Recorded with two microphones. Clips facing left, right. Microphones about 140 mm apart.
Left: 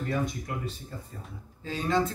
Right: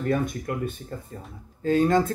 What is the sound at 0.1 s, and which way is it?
Speech, 55° right (ahead or behind).